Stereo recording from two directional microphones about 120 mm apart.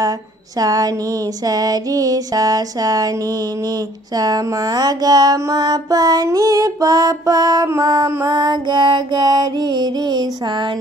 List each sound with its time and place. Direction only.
0.6 s music: 30° right (ahead or behind)